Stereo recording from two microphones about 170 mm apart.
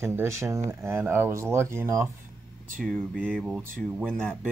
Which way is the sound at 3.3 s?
Centre (ahead or behind).